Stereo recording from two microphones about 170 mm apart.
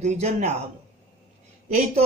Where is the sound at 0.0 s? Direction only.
40° right (ahead or behind).